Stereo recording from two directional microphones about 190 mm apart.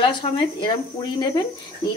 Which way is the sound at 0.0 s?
25° left (ahead or behind).